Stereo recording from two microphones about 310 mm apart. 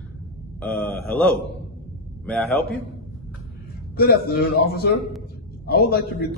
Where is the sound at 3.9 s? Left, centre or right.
Left.